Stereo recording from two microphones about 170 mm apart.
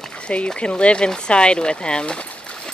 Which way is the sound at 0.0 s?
5° left (ahead or behind).